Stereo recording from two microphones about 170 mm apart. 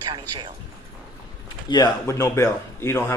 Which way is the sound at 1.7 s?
25° left (ahead or behind).